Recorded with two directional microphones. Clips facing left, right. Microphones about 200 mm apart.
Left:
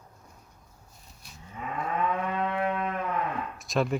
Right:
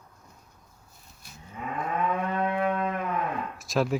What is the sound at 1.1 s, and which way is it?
Cattle, centre (ahead or behind).